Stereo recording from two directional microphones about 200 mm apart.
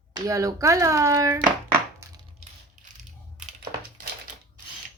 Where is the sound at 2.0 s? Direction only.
15° right (ahead or behind).